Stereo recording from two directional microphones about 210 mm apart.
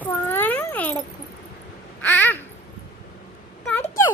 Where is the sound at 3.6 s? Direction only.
10° left (ahead or behind).